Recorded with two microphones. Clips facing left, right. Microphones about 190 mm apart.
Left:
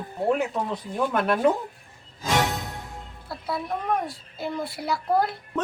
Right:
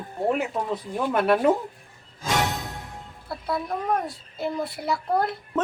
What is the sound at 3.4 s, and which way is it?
A woman's voice, centre (ahead or behind).